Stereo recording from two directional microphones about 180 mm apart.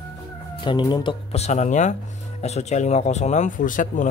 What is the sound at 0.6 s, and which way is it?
Speech, 25° left (ahead or behind).